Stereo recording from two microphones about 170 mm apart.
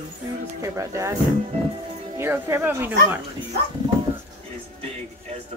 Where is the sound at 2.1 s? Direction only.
15° right (ahead or behind).